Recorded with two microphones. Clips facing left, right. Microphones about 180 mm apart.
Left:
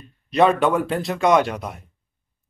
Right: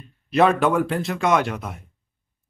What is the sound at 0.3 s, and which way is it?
Speech, centre (ahead or behind).